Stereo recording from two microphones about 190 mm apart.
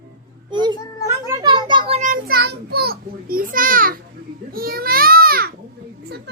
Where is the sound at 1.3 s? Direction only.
20° right (ahead or behind).